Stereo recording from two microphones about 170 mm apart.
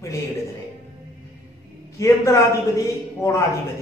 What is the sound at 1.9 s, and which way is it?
A man's voice, 15° left (ahead or behind).